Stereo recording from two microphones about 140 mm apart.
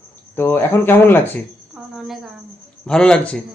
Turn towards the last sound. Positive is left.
turn(degrees=5)  # may be behind; listen again after turning